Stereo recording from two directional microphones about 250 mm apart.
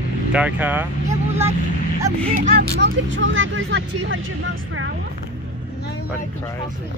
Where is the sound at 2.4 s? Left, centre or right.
Right.